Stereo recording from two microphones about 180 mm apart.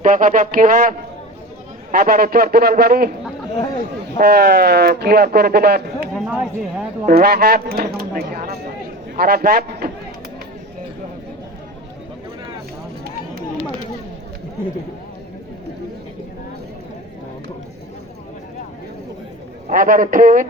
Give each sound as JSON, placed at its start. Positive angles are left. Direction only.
{"t": 0.0, "sound": "speech", "side_deg": -45}
{"t": 4.2, "sound": "speech", "side_deg": -60}
{"t": 6.1, "sound": "a sound", "side_deg": -5}
{"t": 7.0, "sound": "a man's voice", "side_deg": -55}
{"t": 19.6, "sound": "speech", "side_deg": -50}